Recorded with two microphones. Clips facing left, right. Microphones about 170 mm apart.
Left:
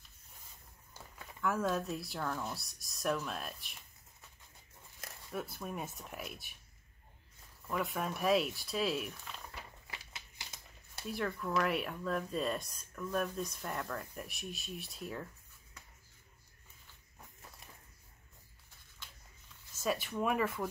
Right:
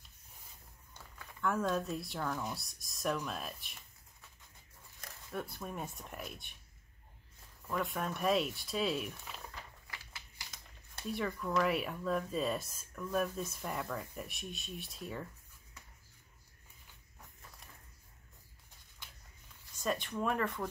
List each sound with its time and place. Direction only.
1.4 s speech: centre (ahead or behind)
5.3 s speech: centre (ahead or behind)
7.6 s speech: centre (ahead or behind)
9.8 s a sound: 20° left (ahead or behind)
11.0 s speech: centre (ahead or behind)
19.7 s speech: 5° left (ahead or behind)